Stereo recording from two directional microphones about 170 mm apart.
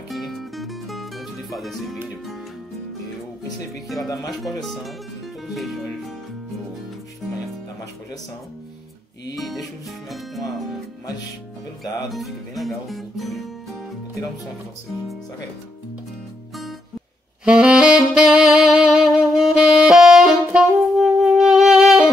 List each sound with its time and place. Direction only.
0.1 s music: centre (ahead or behind)
4.0 s speech: 20° left (ahead or behind)
4.3 s speech: centre (ahead or behind)
9.3 s speech: centre (ahead or behind)
12.1 s speech: centre (ahead or behind)
17.5 s saxophone: 5° right (ahead or behind)